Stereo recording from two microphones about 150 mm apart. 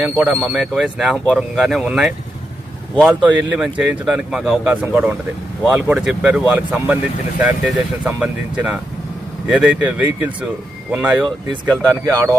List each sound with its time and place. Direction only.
0.2 s speech: 10° right (ahead or behind)